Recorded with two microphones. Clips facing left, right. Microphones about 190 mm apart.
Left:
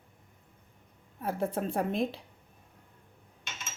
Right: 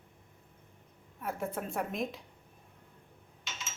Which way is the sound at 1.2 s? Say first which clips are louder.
Left 5 dB; 30° left (ahead or behind).